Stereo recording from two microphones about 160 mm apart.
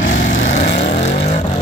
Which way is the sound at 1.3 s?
45° left (ahead or behind).